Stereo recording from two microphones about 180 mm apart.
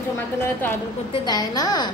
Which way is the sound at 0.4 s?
10° left (ahead or behind).